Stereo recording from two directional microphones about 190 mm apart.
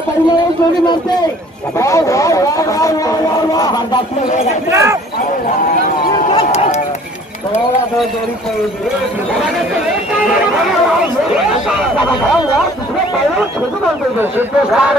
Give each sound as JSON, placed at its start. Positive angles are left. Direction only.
{"t": 1.8, "sound": "speech", "side_deg": 15}
{"t": 4.6, "sound": "speech", "side_deg": -15}
{"t": 6.3, "sound": "run", "side_deg": 35}
{"t": 14.7, "sound": "speech", "side_deg": 0}